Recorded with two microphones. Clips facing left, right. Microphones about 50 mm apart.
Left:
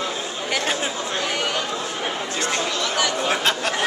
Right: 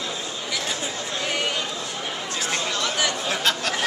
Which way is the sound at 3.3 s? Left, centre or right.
Centre.